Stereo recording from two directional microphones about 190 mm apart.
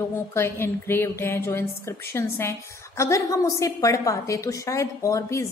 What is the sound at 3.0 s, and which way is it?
A woman's voice, 15° left (ahead or behind).